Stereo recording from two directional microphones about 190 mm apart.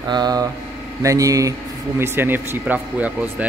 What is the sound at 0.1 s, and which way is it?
A man's voice, 20° right (ahead or behind).